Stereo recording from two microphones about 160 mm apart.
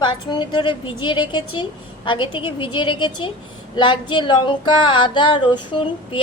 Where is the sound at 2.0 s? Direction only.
30° left (ahead or behind).